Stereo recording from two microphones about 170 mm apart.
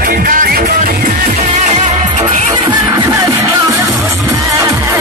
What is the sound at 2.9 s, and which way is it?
Music, 20° right (ahead or behind).